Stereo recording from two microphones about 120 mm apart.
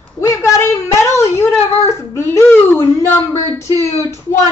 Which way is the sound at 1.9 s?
25° left (ahead or behind).